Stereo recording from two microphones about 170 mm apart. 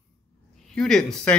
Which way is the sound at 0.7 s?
5° left (ahead or behind).